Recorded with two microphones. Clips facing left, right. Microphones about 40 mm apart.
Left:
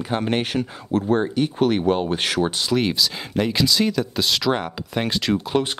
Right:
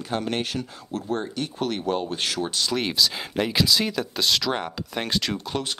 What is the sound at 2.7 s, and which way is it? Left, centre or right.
Speech, centre.